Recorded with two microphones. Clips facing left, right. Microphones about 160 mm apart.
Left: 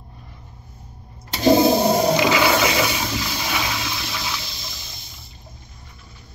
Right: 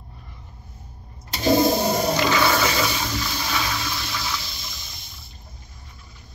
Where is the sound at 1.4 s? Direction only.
25° left (ahead or behind).